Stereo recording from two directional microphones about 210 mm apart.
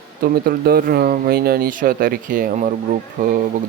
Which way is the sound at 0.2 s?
45° right (ahead or behind).